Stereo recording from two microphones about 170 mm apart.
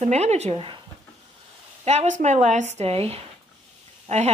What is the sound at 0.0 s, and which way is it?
Speech, 40° right (ahead or behind).